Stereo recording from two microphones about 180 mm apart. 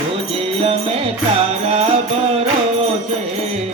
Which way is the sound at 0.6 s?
30° right (ahead or behind).